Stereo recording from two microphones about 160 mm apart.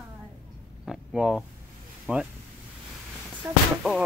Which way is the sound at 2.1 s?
5° right (ahead or behind).